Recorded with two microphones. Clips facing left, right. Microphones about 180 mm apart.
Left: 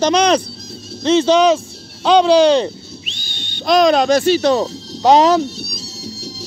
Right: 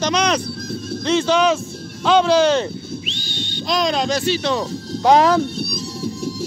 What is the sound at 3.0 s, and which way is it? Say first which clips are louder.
Whistling: right 6 dB; 50° left (ahead or behind).